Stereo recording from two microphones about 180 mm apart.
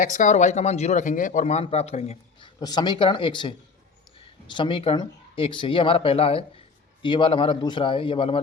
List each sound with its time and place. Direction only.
0.0 s speech: 45° left (ahead or behind)
2.6 s speech: 25° left (ahead or behind)